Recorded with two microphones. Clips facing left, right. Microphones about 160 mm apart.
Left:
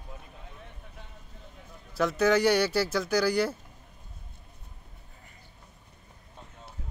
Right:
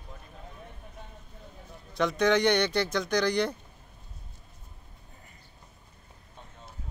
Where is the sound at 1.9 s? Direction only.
5° left (ahead or behind).